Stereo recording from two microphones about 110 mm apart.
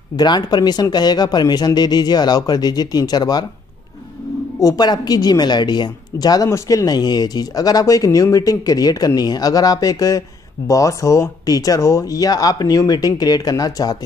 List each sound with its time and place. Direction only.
0.1 s a woman's voice: 40° left (ahead or behind)
4.6 s a woman's voice: 35° left (ahead or behind)